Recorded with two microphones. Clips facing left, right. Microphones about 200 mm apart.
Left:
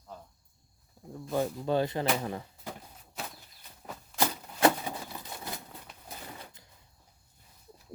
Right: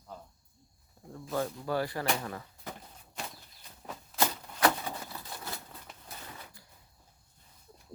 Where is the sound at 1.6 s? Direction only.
20° left (ahead or behind).